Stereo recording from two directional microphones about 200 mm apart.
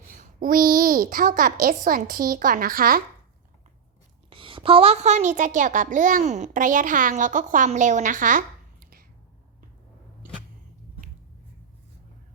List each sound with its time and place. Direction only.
0.2 s a woman's voice: 45° right (ahead or behind)
4.3 s a child's voice: 25° right (ahead or behind); by 9.0 s 45° right (ahead or behind)